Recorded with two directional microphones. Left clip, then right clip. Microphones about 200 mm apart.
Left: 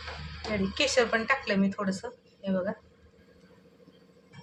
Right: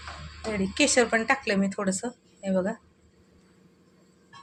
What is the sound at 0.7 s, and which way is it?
A woman's voice, 45° right (ahead or behind).